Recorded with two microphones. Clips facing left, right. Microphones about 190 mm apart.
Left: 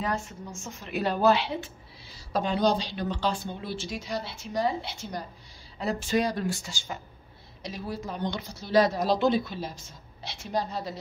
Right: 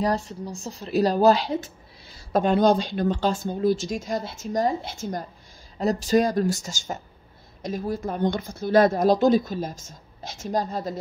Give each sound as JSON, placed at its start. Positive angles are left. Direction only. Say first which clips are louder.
{"t": 0.0, "sound": "a woman's voice", "louder": "right 6 dB", "side_deg": -35}